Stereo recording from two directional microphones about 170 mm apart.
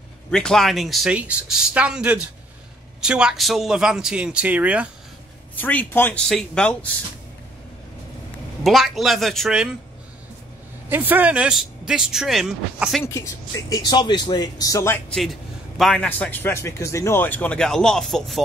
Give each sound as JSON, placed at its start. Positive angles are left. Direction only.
{"t": 0.3, "sound": "speech", "side_deg": 5}
{"t": 5.6, "sound": "a man's voice", "side_deg": 10}
{"t": 8.6, "sound": "speech", "side_deg": 0}
{"t": 10.9, "sound": "speech", "side_deg": -10}
{"t": 13.0, "sound": "speech", "side_deg": 15}
{"t": 15.0, "sound": "a man's voice", "side_deg": 0}